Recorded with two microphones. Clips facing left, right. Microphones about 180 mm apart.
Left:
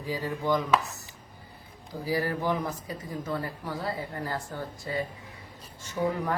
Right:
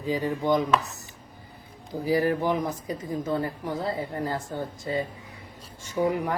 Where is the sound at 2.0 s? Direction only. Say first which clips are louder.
Right 5 dB; 20° right (ahead or behind).